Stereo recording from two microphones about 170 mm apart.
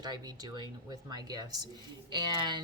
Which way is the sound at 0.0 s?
25° right (ahead or behind).